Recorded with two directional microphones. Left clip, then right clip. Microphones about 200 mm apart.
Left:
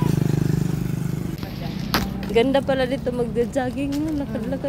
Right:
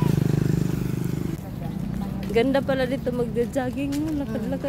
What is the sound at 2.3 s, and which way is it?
Speech, centre (ahead or behind).